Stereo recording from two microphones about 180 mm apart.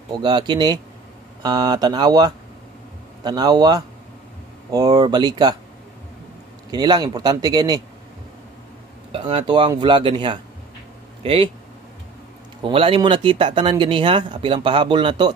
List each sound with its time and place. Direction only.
0.1 s speech: 25° right (ahead or behind)
6.7 s speech: 25° right (ahead or behind)
9.1 s speech: 30° right (ahead or behind)
12.6 s speech: 30° right (ahead or behind)